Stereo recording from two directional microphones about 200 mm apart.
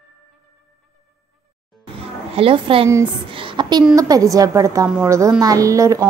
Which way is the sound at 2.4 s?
25° right (ahead or behind).